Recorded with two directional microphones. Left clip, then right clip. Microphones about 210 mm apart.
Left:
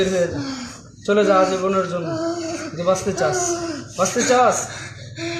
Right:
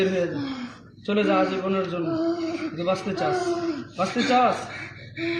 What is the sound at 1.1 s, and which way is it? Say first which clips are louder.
Speech: left 7 dB; 30° left (ahead or behind).